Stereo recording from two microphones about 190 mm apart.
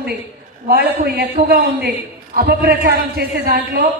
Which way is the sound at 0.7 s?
55° right (ahead or behind).